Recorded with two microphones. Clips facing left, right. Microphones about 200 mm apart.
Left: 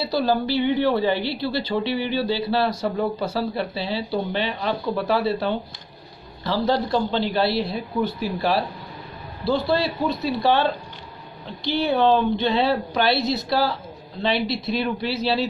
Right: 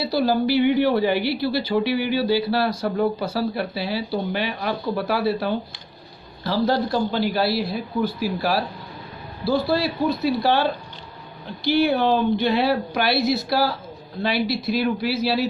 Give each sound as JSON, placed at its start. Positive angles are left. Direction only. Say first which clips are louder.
{"t": 0.1, "sound": "speech", "louder": "right 2 dB", "side_deg": -10}
{"t": 11.7, "sound": "speech", "louder": "even", "side_deg": -10}
{"t": 13.2, "sound": "speech", "louder": "right 3 dB", "side_deg": 20}
{"t": 13.5, "sound": "speech", "louder": "even", "side_deg": -10}